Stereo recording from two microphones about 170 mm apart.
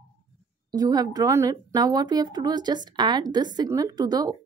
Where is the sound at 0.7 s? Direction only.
20° right (ahead or behind).